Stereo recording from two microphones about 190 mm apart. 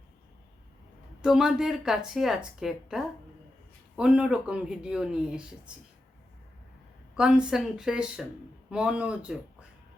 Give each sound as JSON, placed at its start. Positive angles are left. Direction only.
{"t": 1.2, "sound": "speech", "side_deg": 0}
{"t": 7.2, "sound": "speech", "side_deg": -5}